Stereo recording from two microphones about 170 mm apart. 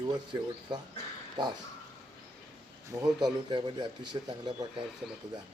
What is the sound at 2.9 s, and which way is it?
Speech, 25° right (ahead or behind).